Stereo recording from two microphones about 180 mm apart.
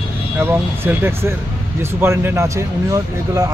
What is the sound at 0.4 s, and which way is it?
Speech, 10° right (ahead or behind).